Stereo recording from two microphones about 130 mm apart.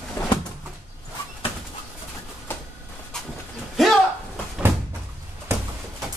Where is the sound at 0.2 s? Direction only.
20° left (ahead or behind).